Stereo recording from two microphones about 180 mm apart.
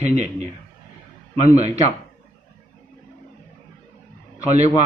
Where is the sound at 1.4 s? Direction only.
40° right (ahead or behind).